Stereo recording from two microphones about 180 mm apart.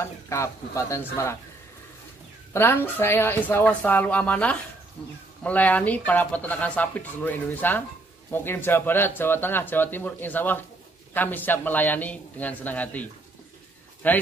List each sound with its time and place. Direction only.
0.0 s speech: 15° left (ahead or behind)
2.5 s speech: 10° left (ahead or behind)